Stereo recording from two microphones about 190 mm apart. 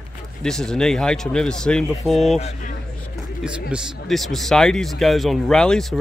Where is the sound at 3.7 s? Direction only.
Centre (ahead or behind).